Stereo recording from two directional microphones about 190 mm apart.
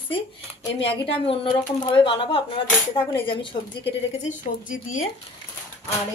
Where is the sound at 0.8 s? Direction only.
30° left (ahead or behind).